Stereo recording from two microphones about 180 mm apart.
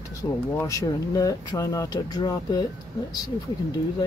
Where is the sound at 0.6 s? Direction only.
20° left (ahead or behind).